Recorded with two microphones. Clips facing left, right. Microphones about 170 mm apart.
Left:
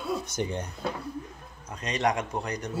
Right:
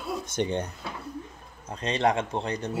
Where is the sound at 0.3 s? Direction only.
30° right (ahead or behind).